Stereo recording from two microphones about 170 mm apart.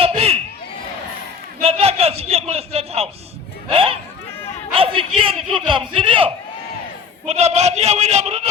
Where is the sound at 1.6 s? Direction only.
35° right (ahead or behind).